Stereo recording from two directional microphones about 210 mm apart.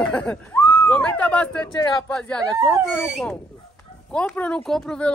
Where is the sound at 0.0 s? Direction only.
5° left (ahead or behind).